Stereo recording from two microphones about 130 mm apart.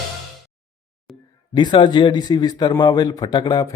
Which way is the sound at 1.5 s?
35° left (ahead or behind).